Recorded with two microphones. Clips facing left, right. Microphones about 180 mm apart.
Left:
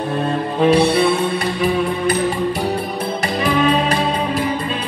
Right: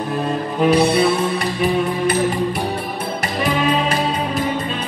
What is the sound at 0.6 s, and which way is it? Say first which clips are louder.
Music: left 1 dB; 30° left (ahead or behind).